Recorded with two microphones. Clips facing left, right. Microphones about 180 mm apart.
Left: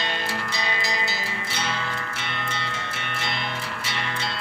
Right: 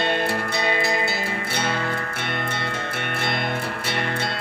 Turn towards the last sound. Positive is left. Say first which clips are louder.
# right 5 dB
turn(degrees=-55)  # may be behind; listen again after turning